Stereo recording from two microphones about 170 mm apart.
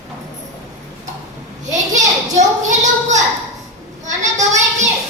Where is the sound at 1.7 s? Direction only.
45° right (ahead or behind).